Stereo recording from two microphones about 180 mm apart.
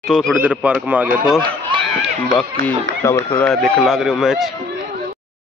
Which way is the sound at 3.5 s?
Centre (ahead or behind).